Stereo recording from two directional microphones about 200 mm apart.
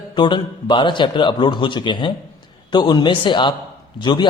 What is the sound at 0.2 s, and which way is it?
A man's voice, 25° left (ahead or behind).